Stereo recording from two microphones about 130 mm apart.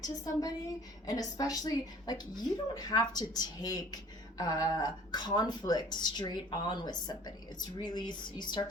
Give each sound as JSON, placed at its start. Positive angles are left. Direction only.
{"t": 0.0, "sound": "a woman's voice", "side_deg": 30}